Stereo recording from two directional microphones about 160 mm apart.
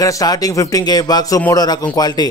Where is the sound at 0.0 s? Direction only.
20° left (ahead or behind).